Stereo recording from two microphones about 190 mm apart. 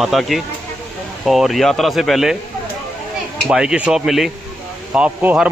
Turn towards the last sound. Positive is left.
turn(degrees=-5)  # may be behind; listen again after turning